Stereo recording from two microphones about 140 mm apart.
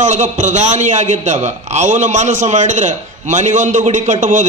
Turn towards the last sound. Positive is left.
turn(degrees=-60)  # may be behind; listen again after turning